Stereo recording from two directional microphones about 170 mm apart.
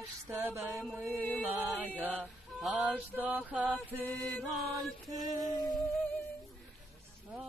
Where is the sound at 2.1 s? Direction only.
Centre (ahead or behind).